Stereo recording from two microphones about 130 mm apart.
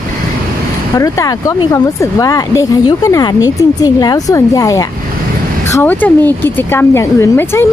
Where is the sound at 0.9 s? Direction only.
25° left (ahead or behind).